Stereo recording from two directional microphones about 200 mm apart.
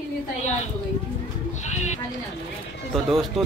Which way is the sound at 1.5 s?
35° left (ahead or behind).